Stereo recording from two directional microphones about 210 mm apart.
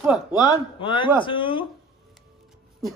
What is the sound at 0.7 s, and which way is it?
Speech, 25° left (ahead or behind).